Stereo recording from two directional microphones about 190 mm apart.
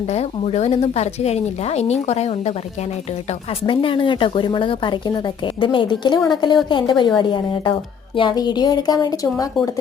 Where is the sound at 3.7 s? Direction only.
25° left (ahead or behind).